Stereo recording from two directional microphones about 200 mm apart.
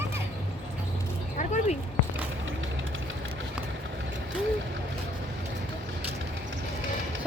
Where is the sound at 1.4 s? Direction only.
35° left (ahead or behind).